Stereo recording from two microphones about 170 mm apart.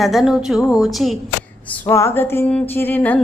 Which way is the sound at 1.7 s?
15° left (ahead or behind).